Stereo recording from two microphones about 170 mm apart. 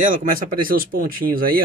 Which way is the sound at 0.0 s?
50° right (ahead or behind).